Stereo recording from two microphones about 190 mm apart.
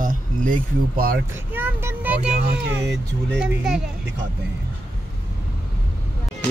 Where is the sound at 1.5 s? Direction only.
10° right (ahead or behind).